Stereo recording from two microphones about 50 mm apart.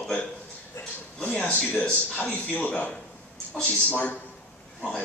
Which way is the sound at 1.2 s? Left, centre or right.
Left.